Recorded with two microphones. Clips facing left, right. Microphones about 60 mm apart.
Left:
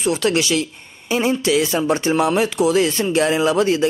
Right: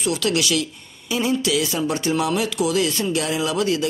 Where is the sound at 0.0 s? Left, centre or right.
Left.